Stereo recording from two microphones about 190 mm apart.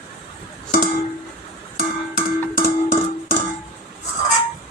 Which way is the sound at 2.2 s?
50° left (ahead or behind).